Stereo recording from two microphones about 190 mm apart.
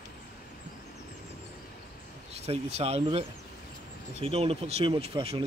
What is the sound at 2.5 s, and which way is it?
Speech, 35° right (ahead or behind).